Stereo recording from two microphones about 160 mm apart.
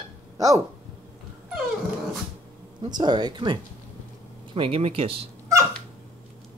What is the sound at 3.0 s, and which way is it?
Speech, 30° right (ahead or behind).